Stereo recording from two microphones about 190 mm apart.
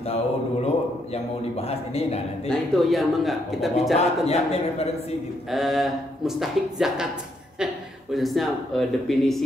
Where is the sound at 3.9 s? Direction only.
35° left (ahead or behind).